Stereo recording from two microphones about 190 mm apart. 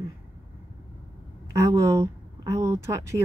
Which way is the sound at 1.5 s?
15° right (ahead or behind).